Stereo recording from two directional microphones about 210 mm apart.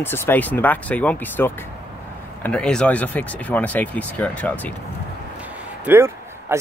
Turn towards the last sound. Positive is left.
turn(degrees=-10)  # may be behind; listen again after turning